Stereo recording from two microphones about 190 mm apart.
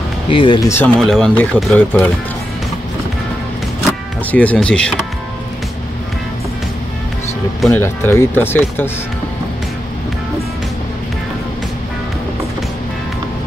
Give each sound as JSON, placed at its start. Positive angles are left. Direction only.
{"t": 0.3, "sound": "speech", "side_deg": 25}
{"t": 0.7, "sound": "speech", "side_deg": 10}
{"t": 4.3, "sound": "speech", "side_deg": 10}
{"t": 7.6, "sound": "speech", "side_deg": 10}